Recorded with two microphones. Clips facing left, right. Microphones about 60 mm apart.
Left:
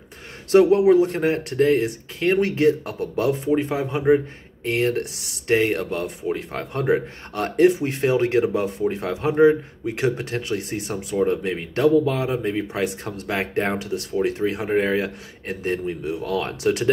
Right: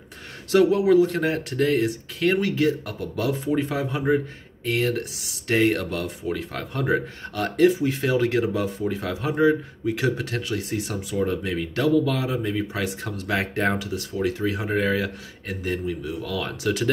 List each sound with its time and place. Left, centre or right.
0.5 s speech: left
14.1 s speech: left